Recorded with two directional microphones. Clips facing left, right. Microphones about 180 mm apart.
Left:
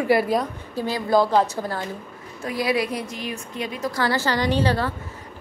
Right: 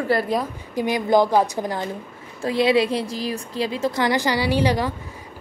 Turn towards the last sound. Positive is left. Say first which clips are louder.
# right 1 dB
turn(degrees=-15)  # may be behind; listen again after turning